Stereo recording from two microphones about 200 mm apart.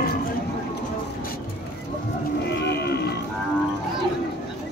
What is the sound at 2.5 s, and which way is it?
Cattle, 60° left (ahead or behind).